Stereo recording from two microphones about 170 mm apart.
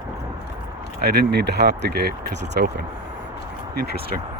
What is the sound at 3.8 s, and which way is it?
Speech, 65° right (ahead or behind).